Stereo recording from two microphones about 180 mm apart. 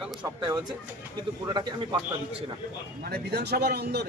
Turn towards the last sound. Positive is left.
turn(degrees=-65)  # may be behind; listen again after turning